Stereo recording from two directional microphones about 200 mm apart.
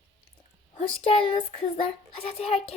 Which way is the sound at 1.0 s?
25° left (ahead or behind).